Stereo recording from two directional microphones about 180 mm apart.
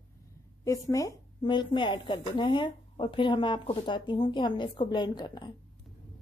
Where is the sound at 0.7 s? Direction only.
20° left (ahead or behind).